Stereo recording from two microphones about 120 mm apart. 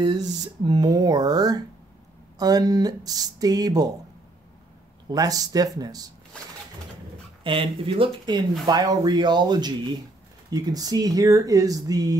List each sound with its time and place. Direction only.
0.7 s speech: 35° right (ahead or behind)
5.1 s speech: 30° right (ahead or behind)
7.4 s speech: 45° right (ahead or behind)